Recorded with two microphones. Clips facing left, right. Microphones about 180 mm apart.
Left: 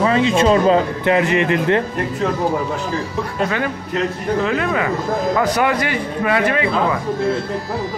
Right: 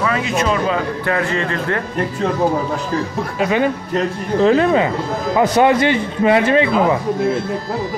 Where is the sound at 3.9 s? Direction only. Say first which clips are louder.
Left 2 dB; 30° right (ahead or behind).